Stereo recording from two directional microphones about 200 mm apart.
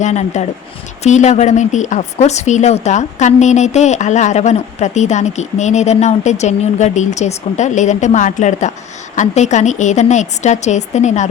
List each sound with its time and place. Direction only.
0.0 s a woman's voice: 35° left (ahead or behind)